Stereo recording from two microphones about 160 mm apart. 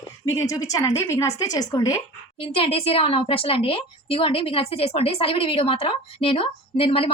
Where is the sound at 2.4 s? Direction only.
35° left (ahead or behind).